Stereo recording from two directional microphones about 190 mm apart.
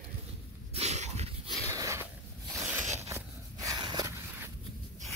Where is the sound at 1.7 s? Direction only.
15° right (ahead or behind).